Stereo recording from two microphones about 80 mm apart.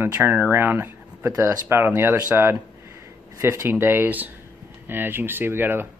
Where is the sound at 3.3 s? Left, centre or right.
Right.